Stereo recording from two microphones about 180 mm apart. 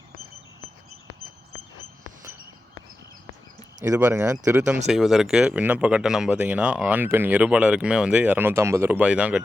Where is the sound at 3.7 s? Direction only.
20° right (ahead or behind).